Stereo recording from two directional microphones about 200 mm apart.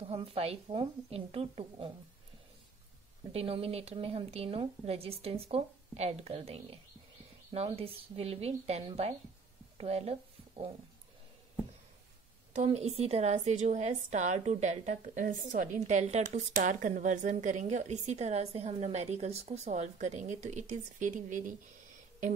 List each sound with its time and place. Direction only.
0.0 s a woman's voice: 30° right (ahead or behind)
3.3 s a woman's voice: 30° right (ahead or behind)
12.5 s a woman's voice: 35° right (ahead or behind)